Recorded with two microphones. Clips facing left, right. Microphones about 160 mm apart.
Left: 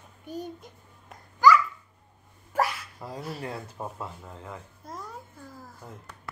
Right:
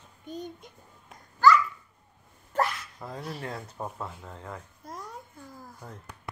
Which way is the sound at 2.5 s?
10° left (ahead or behind).